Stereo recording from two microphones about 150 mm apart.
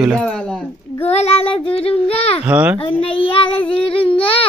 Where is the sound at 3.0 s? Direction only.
40° left (ahead or behind).